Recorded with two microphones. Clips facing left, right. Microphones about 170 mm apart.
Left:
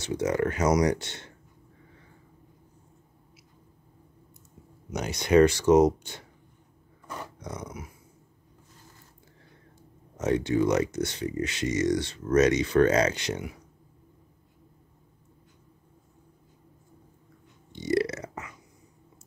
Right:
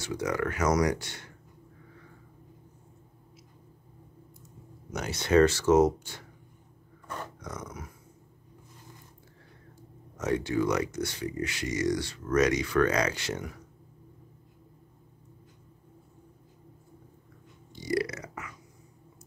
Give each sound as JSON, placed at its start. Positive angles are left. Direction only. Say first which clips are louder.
{"t": 0.0, "sound": "speech", "louder": "left 4 dB", "side_deg": 25}
{"t": 4.9, "sound": "speech", "louder": "left 2 dB", "side_deg": 15}
{"t": 7.6, "sound": "speech", "louder": "left 2 dB", "side_deg": 10}
{"t": 10.1, "sound": "speech", "louder": "left 3 dB", "side_deg": 25}
{"t": 17.7, "sound": "burping", "louder": "left 4 dB", "side_deg": 25}